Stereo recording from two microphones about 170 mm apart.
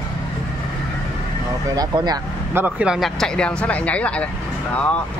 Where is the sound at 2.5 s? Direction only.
10° right (ahead or behind); by 4.2 s 10° left (ahead or behind).